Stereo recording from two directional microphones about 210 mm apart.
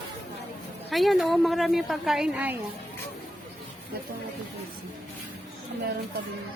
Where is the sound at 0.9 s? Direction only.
Centre (ahead or behind).